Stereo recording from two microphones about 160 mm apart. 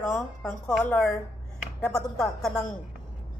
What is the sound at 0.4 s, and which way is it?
Speech, 10° left (ahead or behind).